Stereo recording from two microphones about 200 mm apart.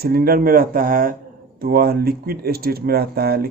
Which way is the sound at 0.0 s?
45° right (ahead or behind).